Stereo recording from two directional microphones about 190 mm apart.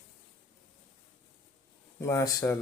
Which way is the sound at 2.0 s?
15° left (ahead or behind).